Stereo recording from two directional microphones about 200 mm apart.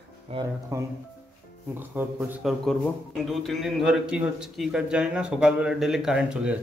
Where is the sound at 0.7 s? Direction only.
15° right (ahead or behind).